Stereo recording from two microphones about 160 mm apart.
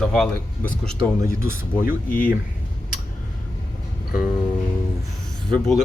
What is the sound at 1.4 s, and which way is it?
Speech, 15° right (ahead or behind).